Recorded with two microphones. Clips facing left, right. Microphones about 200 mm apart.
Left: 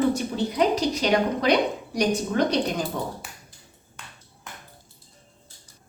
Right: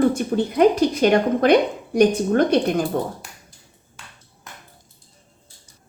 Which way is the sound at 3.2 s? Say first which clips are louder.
Even; centre (ahead or behind).